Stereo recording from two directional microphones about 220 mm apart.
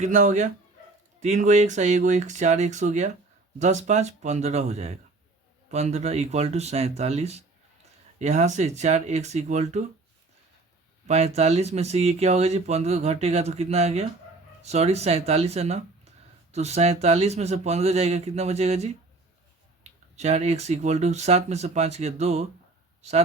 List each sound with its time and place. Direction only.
0.0 s speech: 35° right (ahead or behind)
11.1 s speech: 30° right (ahead or behind)